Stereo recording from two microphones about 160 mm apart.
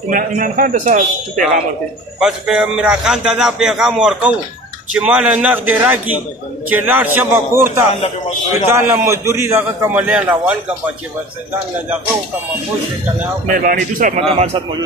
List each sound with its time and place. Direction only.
0.1 s a man's voice: 60° right (ahead or behind)
2.1 s a man's voice: 5° right (ahead or behind)
13.5 s a man's voice: 55° right (ahead or behind)